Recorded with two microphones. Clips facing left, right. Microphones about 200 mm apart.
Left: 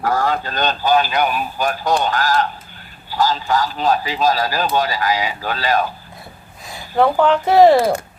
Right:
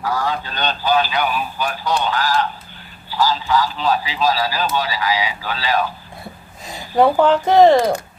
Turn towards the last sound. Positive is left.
turn(degrees=5)  # may be behind; listen again after turning